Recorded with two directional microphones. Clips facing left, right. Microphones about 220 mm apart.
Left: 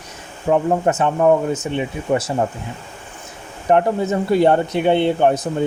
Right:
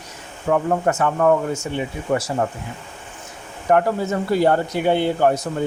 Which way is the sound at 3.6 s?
20° left (ahead or behind).